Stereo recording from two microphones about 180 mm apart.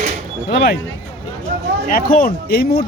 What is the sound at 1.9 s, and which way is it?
Speech, 55° left (ahead or behind).